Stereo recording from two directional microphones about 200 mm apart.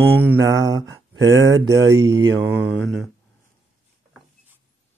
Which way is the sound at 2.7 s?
Centre (ahead or behind).